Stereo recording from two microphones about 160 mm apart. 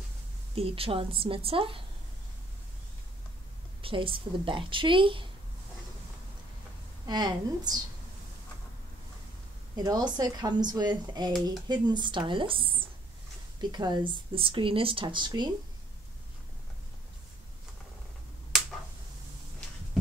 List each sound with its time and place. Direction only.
0.6 s a woman's voice: 35° right (ahead or behind)
3.8 s a woman's voice: 35° right (ahead or behind)
7.1 s speech: 25° right (ahead or behind)
9.8 s speech: 25° right (ahead or behind)
18.5 s finger snapping: 5° right (ahead or behind)